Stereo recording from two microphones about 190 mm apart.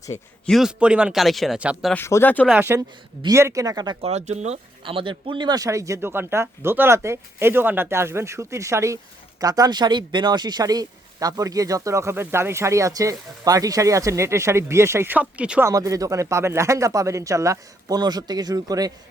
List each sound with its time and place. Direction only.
0.4 s speech: centre (ahead or behind)
1.9 s speech: 10° left (ahead or behind)
2.5 s speech: 10° right (ahead or behind)
4.0 s speech: 35° right (ahead or behind); by 15.7 s 5° right (ahead or behind)
15.7 s speech: 15° right (ahead or behind)